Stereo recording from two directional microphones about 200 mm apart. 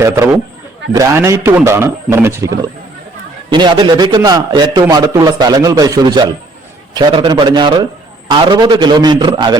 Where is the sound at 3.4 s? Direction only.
20° right (ahead or behind).